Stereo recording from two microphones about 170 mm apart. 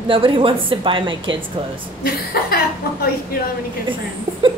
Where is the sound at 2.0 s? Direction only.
65° left (ahead or behind).